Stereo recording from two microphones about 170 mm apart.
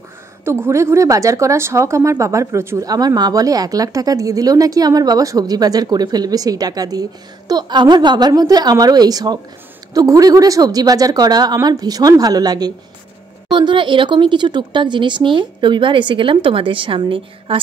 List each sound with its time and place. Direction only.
0.5 s a woman's voice: 15° right (ahead or behind)